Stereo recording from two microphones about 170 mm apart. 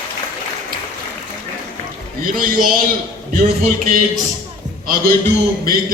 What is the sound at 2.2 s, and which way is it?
A man's voice, 55° right (ahead or behind).